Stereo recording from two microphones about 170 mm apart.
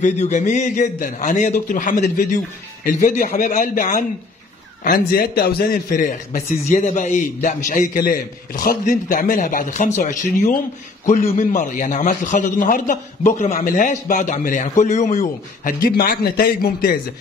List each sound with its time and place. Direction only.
0.0 s a man's voice: 45° left (ahead or behind)